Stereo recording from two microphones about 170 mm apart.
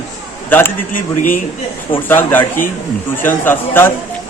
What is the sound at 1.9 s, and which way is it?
A man's voice, 10° left (ahead or behind).